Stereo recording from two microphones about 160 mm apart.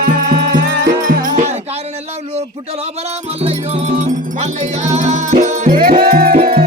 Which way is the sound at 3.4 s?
40° right (ahead or behind).